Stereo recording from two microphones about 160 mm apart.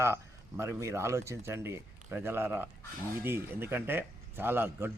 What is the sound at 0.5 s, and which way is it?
Speech, 15° right (ahead or behind).